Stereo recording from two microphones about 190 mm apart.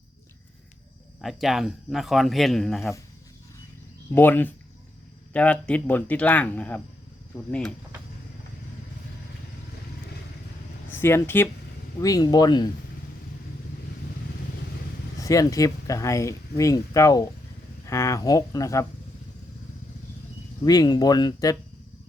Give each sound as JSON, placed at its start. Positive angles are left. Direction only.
{"t": 1.2, "sound": "a man's voice", "side_deg": 0}
{"t": 4.1, "sound": "speech", "side_deg": 10}
{"t": 11.0, "sound": "speech", "side_deg": 10}
{"t": 15.2, "sound": "speech", "side_deg": 15}
{"t": 20.7, "sound": "speech", "side_deg": 20}